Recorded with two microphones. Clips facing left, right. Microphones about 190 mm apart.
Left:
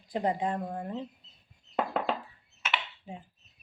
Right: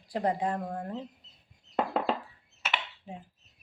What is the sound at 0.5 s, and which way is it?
Speech, 5° left (ahead or behind).